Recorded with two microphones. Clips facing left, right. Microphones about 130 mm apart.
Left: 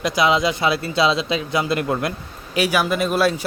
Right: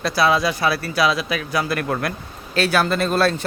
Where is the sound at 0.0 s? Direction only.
20° left (ahead or behind).